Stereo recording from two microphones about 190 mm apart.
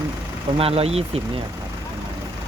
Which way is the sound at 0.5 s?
30° right (ahead or behind).